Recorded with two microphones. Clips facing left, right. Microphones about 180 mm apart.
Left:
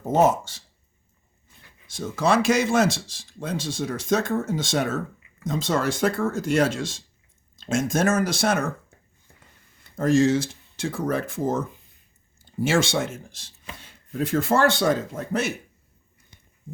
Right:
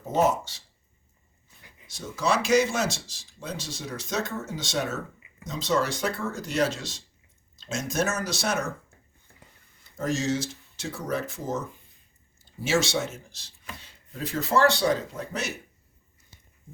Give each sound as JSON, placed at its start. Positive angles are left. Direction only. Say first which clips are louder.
{"t": 0.3, "sound": "speech", "louder": "left 3 dB", "side_deg": 50}
{"t": 1.9, "sound": "speech", "louder": "left 5 dB", "side_deg": 50}
{"t": 9.9, "sound": "speech", "louder": "left 8 dB", "side_deg": 55}
{"t": 12.6, "sound": "speech", "louder": "left 3 dB", "side_deg": 55}